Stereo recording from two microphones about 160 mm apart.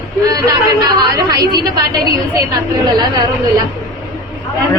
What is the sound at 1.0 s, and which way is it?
Speech, 25° right (ahead or behind).